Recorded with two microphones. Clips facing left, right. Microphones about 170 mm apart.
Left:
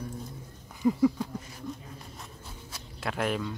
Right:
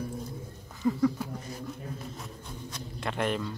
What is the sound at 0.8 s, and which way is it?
Speech, 15° left (ahead or behind).